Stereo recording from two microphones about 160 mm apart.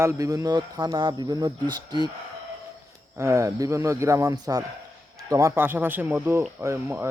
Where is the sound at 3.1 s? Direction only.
15° right (ahead or behind).